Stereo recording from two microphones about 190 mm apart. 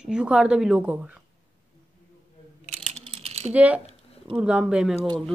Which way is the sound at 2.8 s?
35° right (ahead or behind).